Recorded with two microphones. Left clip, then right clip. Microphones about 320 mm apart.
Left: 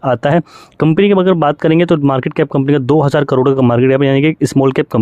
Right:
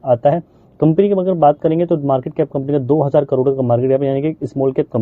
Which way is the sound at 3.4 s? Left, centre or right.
Left.